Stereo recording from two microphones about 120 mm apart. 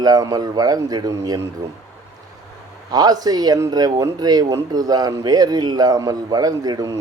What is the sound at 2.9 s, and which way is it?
Speech, 35° right (ahead or behind).